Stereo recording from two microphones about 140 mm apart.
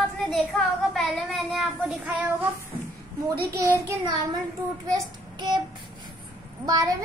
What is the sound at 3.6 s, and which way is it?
Speech, 20° right (ahead or behind).